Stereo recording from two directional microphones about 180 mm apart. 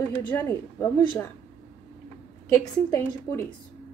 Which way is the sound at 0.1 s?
15° left (ahead or behind).